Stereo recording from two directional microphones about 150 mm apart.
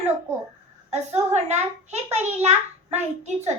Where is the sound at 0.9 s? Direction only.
45° right (ahead or behind).